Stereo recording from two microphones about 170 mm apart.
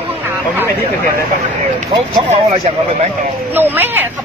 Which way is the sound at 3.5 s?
10° right (ahead or behind).